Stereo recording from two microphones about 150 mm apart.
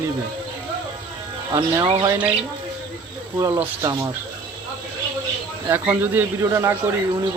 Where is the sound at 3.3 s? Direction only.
20° right (ahead or behind).